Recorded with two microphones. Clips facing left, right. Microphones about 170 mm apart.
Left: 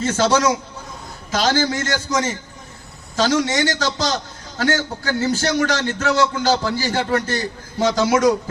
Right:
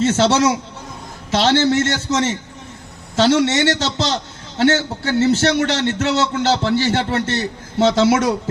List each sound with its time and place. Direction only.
0.0 s a man's voice: 25° right (ahead or behind)
3.4 s a man's voice: 25° right (ahead or behind)